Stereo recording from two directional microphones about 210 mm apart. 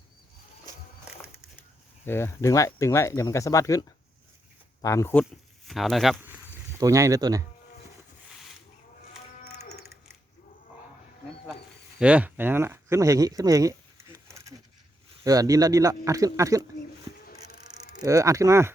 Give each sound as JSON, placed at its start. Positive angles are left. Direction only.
{"t": 2.0, "sound": "speech", "side_deg": 10}
{"t": 5.6, "sound": "speech", "side_deg": 0}
{"t": 9.4, "sound": "livestock", "side_deg": 35}
{"t": 11.9, "sound": "speech", "side_deg": -5}
{"t": 17.2, "sound": "a sound", "side_deg": 45}
{"t": 18.0, "sound": "speech", "side_deg": -15}